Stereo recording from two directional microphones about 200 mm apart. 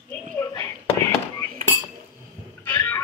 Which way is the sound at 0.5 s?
15° left (ahead or behind).